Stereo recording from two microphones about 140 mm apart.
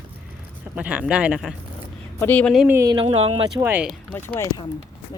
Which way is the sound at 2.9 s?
40° right (ahead or behind).